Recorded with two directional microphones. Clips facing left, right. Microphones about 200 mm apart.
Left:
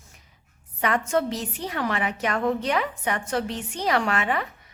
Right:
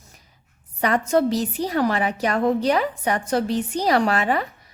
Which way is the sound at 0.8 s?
35° right (ahead or behind).